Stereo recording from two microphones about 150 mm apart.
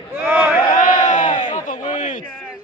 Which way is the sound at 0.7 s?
55° left (ahead or behind).